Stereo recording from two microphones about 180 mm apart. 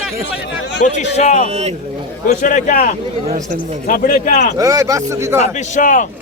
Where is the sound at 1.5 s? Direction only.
35° right (ahead or behind).